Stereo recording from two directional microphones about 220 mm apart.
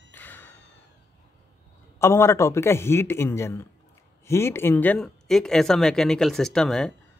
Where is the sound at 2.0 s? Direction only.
10° left (ahead or behind).